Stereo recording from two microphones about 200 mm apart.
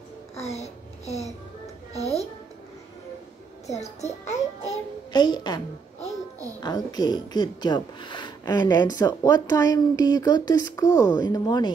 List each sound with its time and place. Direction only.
0.4 s a sound: 35° left (ahead or behind)
2.0 s a woman's voice: 15° right (ahead or behind)
4.0 s a child's voice: 35° left (ahead or behind)
5.1 s speech: 20° left (ahead or behind)
6.6 s speech: 20° left (ahead or behind)